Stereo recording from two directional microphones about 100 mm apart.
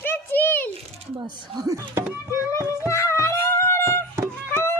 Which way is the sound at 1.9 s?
30° right (ahead or behind).